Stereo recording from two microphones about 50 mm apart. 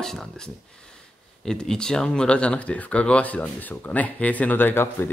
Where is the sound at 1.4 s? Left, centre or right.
Centre.